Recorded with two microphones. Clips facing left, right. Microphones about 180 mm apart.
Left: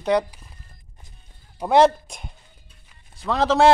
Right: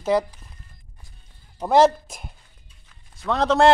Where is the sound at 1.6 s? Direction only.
Centre (ahead or behind).